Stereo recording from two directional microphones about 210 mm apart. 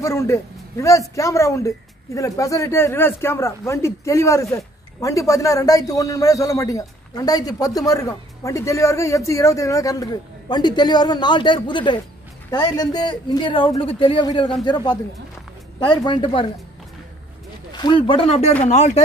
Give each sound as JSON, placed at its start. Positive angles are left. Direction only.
{"t": 0.0, "sound": "a man's voice", "side_deg": 15}
{"t": 17.7, "sound": "a man's voice", "side_deg": 20}